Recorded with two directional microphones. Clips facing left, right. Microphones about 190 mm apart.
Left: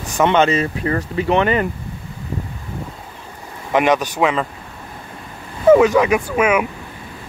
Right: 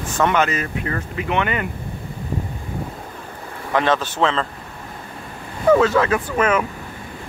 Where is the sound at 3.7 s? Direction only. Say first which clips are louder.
Left 3 dB; 15° left (ahead or behind).